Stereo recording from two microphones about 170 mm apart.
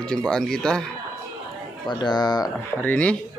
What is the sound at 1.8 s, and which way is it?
Speech, 25° left (ahead or behind).